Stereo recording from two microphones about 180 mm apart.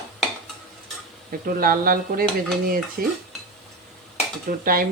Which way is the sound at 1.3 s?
55° right (ahead or behind).